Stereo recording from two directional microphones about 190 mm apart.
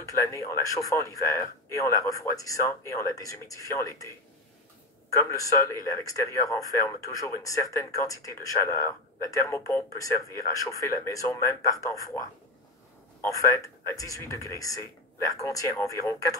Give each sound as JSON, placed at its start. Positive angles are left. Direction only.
{"t": 0.0, "sound": "speech", "side_deg": 15}
{"t": 5.1, "sound": "speech", "side_deg": 15}
{"t": 13.3, "sound": "speech", "side_deg": 15}